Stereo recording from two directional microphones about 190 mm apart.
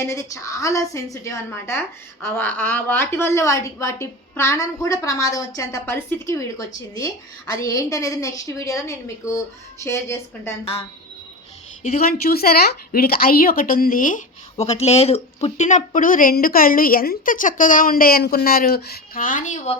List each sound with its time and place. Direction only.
0.0 s a woman's voice: 15° left (ahead or behind)
7.6 s a woman's voice: 15° left (ahead or behind)
11.8 s a woman's voice: 35° left (ahead or behind)
12.1 s speech: 55° left (ahead or behind)
14.6 s speech: 35° left (ahead or behind)